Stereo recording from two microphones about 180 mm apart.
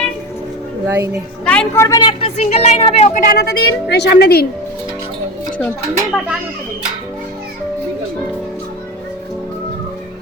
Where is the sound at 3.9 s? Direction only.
70° left (ahead or behind).